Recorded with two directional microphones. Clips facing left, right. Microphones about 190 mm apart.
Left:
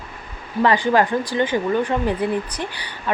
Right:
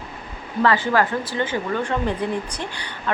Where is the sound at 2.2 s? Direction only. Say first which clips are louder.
Left 3 dB; 10° left (ahead or behind).